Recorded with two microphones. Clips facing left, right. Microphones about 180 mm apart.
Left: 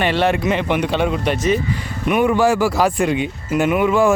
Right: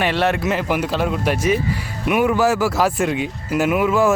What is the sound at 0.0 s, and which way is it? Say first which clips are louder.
Speech: left 2 dB; centre (ahead or behind).